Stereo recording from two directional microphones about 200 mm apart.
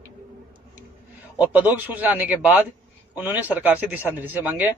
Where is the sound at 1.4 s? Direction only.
10° right (ahead or behind).